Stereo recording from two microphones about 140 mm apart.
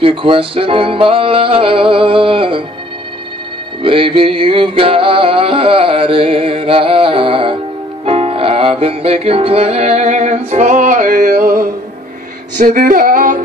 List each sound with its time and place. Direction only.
0.0 s speech: 40° right (ahead or behind)
3.8 s music: 40° right (ahead or behind); by 11.6 s 90° right
12.5 s female singing: 80° right